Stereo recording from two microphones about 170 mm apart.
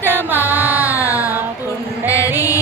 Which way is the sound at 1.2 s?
10° right (ahead or behind).